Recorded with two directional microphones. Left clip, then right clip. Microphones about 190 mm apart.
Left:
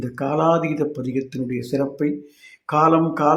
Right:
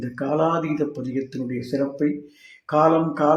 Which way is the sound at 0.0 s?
25° left (ahead or behind).